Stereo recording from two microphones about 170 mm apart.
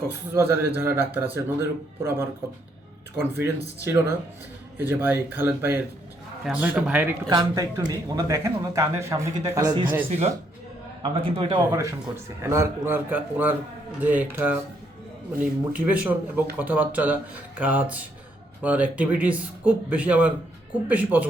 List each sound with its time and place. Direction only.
0.3 s a man's voice: 15° right (ahead or behind)
3.2 s a man's voice: 15° right (ahead or behind)
7.3 s speech: 25° right (ahead or behind)
10.1 s a man's voice: 40° right (ahead or behind); by 21.2 s 10° right (ahead or behind)